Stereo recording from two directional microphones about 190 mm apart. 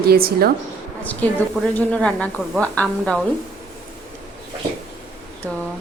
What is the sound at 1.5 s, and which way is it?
A woman's voice, 5° left (ahead or behind).